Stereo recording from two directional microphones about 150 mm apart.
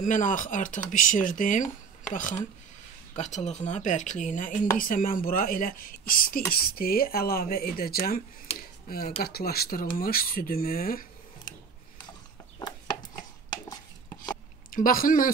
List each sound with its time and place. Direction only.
0.0 s speech: 60° left (ahead or behind)
3.2 s speech: 50° left (ahead or behind)
4.7 s speech: 65° left (ahead or behind)
6.5 s speech: 85° left
12.5 s chopping: 25° left (ahead or behind)
14.7 s speech: 70° left (ahead or behind)